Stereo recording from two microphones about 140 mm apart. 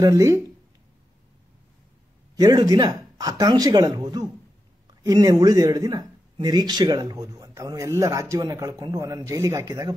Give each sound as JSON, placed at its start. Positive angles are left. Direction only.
{"t": 0.0, "sound": "speech", "side_deg": -25}
{"t": 2.3, "sound": "speech", "side_deg": -25}